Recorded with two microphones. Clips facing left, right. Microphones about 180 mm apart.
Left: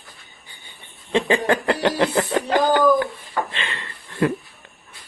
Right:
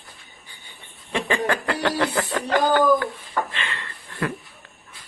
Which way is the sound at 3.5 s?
20° left (ahead or behind).